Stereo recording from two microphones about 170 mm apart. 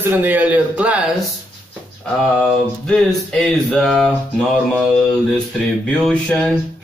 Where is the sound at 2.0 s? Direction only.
5° left (ahead or behind).